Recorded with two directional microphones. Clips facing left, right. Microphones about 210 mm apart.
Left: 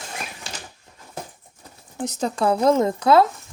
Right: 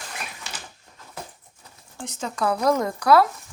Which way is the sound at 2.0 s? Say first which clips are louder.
Left 4 dB; 40° left (ahead or behind).